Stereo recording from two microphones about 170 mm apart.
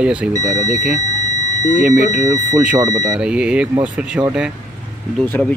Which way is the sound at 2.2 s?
20° right (ahead or behind).